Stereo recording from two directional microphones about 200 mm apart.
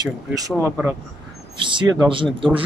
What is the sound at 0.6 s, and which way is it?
Speech, 5° right (ahead or behind).